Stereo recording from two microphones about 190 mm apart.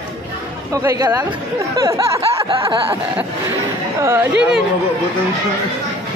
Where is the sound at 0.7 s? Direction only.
20° right (ahead or behind).